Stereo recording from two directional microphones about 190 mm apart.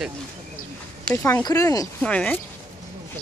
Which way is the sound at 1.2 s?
15° left (ahead or behind).